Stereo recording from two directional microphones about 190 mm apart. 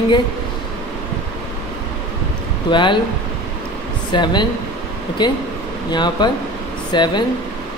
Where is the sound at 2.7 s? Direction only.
25° left (ahead or behind).